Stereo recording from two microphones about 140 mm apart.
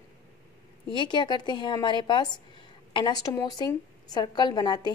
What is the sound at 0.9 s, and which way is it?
A woman's voice, 35° left (ahead or behind).